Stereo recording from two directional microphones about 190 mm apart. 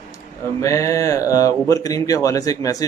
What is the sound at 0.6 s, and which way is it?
Speech, 15° left (ahead or behind).